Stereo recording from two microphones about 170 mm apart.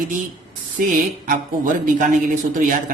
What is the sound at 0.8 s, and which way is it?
A man's voice, 50° right (ahead or behind).